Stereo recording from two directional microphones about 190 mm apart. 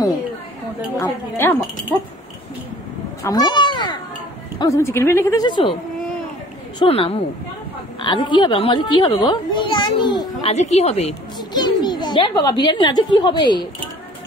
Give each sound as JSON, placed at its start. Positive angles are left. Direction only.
{"t": 0.9, "sound": "a woman's voice", "side_deg": 15}
{"t": 3.3, "sound": "a woman's voice", "side_deg": 20}
{"t": 6.8, "sound": "a woman's voice", "side_deg": 30}
{"t": 10.5, "sound": "a woman's voice", "side_deg": 35}
{"t": 11.5, "sound": "a child's voice", "side_deg": 25}